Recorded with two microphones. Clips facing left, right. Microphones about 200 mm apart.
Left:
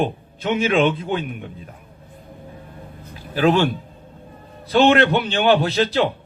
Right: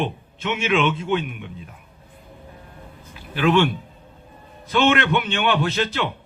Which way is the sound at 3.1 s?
40° left (ahead or behind).